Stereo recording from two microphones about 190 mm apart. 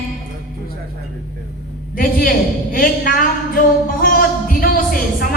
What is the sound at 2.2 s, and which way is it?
Speech, 50° left (ahead or behind).